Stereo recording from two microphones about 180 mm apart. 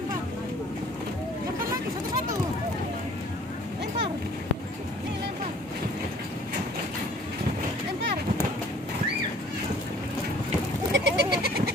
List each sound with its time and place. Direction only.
10.9 s goat: 65° right (ahead or behind)